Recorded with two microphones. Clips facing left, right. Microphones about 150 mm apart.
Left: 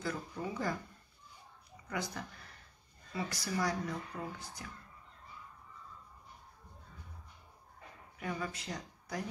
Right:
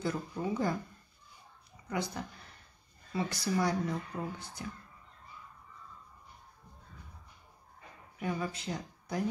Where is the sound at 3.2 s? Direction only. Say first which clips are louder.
Right 4 dB; 25° right (ahead or behind).